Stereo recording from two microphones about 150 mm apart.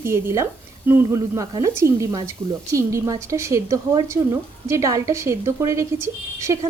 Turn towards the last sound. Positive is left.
turn(degrees=-20)  # may be behind; listen again after turning